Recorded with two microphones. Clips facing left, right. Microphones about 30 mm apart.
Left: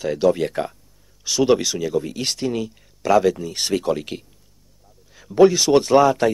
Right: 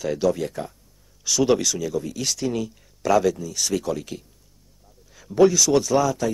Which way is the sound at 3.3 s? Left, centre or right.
Left.